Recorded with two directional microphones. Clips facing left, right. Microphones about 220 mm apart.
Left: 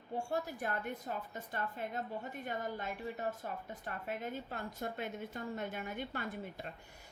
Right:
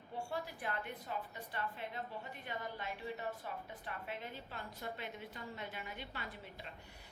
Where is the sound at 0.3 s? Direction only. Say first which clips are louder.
Left 4 dB; 45° left (ahead or behind).